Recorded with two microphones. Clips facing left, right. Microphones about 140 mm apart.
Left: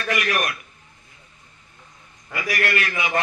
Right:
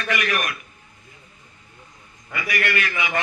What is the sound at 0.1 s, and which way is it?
Speech, 40° left (ahead or behind).